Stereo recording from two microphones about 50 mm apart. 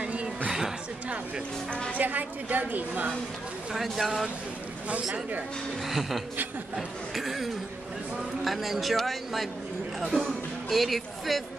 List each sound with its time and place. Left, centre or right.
0.0 s a sound: right
0.5 s a sound: centre
1.7 s a woman's voice: left
2.0 s a woman's voice: right
3.7 s speech: centre
5.9 s speech: centre